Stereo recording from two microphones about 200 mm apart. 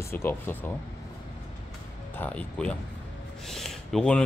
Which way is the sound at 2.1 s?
5° left (ahead or behind).